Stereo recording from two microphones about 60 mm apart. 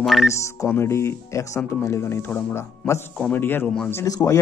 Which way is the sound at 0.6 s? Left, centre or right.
Left.